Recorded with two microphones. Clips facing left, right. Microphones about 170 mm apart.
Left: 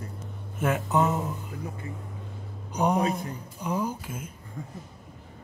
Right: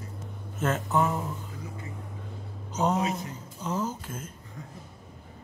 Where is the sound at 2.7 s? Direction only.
15° left (ahead or behind).